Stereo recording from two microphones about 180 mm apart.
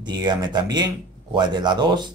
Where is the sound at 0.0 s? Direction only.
25° right (ahead or behind).